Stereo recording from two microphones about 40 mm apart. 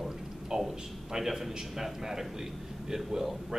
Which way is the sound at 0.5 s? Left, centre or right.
Centre.